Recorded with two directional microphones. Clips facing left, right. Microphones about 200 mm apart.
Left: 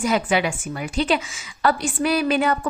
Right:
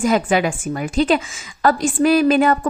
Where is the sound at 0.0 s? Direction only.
45° right (ahead or behind).